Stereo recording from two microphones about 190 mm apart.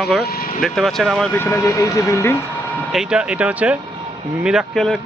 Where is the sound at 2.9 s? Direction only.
5° right (ahead or behind).